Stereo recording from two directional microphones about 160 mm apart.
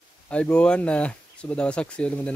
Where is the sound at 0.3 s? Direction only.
5° left (ahead or behind).